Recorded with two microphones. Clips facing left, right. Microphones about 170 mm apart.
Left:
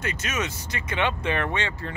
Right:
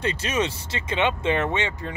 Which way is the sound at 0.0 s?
30° right (ahead or behind).